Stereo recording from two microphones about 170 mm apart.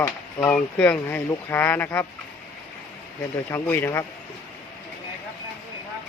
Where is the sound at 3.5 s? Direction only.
15° left (ahead or behind).